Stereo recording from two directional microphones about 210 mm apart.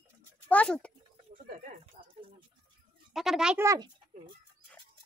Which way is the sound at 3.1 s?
Centre (ahead or behind).